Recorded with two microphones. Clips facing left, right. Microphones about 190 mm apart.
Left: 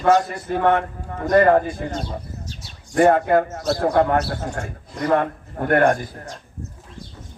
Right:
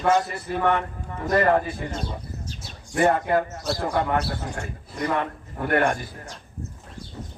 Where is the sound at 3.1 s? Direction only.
50° left (ahead or behind).